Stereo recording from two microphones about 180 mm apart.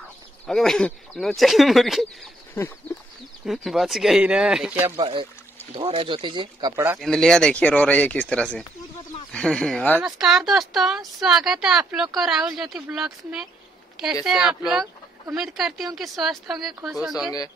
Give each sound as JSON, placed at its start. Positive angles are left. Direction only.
{"t": 0.5, "sound": "speech", "side_deg": 0}
{"t": 3.4, "sound": "speech", "side_deg": 0}
{"t": 4.9, "sound": "speech", "side_deg": -30}
{"t": 7.0, "sound": "speech", "side_deg": 5}